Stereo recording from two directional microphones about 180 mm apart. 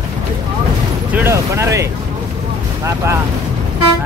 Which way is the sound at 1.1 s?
15° right (ahead or behind).